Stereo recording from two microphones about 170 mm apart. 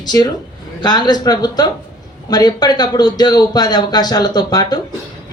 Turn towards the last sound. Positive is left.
turn(degrees=25)  # may be behind; listen again after turning